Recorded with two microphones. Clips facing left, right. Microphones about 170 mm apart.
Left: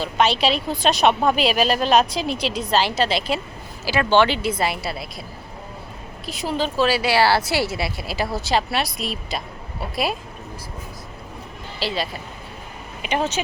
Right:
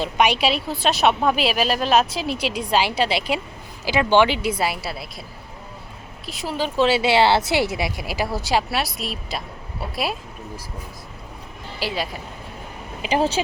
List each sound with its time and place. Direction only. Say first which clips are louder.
0.0 s a woman's voice: even; 15° right (ahead or behind)
6.2 s a woman's voice: left 3 dB; centre (ahead or behind)
6.6 s a woman's voice: right 2 dB; 20° right (ahead or behind); by 10.2 s centre (ahead or behind)
11.8 s speech: left 1 dB; 10° right (ahead or behind)
13.0 s speech: right 3 dB; 30° right (ahead or behind)